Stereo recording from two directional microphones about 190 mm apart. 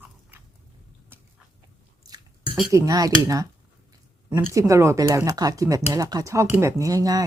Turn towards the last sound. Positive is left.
turn(degrees=-20)  # may be behind; listen again after turning